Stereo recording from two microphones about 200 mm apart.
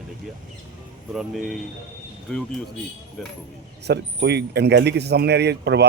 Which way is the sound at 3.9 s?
55° right (ahead or behind).